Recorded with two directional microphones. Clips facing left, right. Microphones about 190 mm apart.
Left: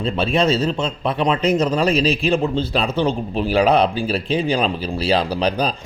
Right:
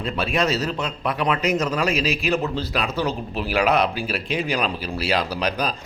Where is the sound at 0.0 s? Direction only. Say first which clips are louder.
Left 4 dB; 30° left (ahead or behind).